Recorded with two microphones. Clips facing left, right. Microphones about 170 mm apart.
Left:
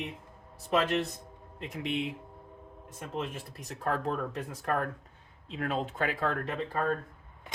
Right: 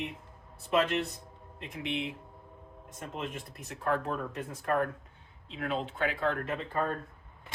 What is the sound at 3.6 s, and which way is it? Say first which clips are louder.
Speech: even; 35° left (ahead or behind).